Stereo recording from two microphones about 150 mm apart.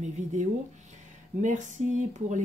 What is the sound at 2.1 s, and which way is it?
Speech, 55° right (ahead or behind).